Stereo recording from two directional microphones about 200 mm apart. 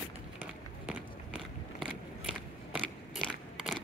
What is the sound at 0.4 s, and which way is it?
Run, 10° right (ahead or behind).